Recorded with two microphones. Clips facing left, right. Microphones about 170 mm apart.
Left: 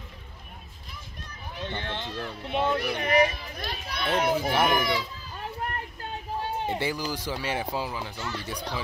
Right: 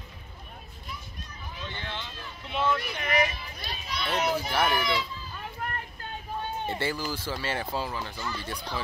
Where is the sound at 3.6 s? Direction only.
55° left (ahead or behind).